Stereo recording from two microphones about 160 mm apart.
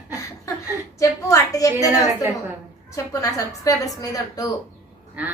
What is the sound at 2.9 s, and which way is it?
A woman's voice, 20° left (ahead or behind).